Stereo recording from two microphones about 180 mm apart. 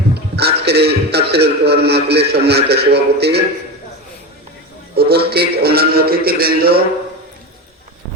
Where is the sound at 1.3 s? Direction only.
65° right (ahead or behind).